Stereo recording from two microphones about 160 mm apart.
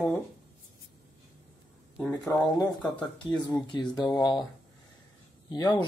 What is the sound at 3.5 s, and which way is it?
Speech, 25° left (ahead or behind).